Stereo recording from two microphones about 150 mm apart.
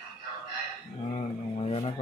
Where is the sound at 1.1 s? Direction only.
40° left (ahead or behind).